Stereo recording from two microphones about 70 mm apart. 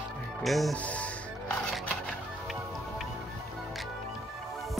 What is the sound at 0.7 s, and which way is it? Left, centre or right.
Music, centre.